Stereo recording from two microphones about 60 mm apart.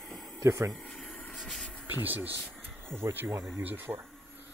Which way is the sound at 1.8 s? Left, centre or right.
Right.